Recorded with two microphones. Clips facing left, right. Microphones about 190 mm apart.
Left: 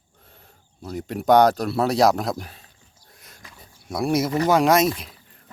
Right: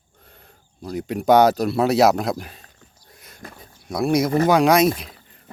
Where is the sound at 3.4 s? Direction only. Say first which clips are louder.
Right 9 dB; 60° right (ahead or behind).